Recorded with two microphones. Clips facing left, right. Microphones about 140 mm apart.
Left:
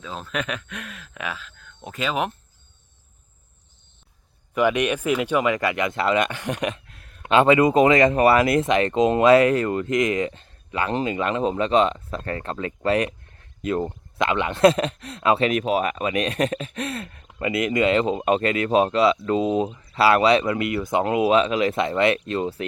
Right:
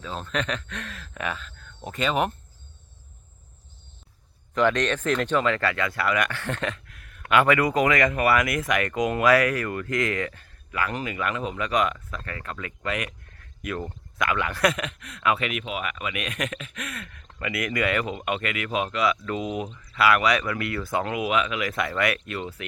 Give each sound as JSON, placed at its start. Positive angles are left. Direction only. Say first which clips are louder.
{"t": 0.0, "sound": "speech", "louder": "even", "side_deg": 0}
{"t": 4.5, "sound": "speech", "louder": "left 2 dB", "side_deg": 10}